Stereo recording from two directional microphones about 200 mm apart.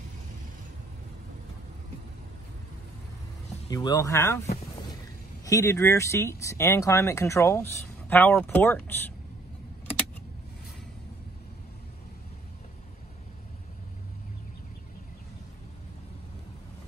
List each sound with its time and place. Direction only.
3.7 s speech: 20° left (ahead or behind)